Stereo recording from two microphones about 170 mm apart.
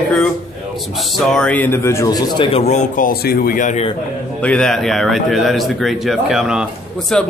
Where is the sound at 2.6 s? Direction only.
45° left (ahead or behind).